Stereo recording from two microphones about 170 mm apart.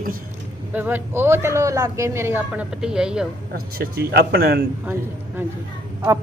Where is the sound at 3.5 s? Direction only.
65° right (ahead or behind).